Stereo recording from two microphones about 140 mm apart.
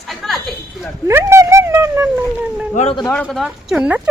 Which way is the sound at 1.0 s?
20° right (ahead or behind).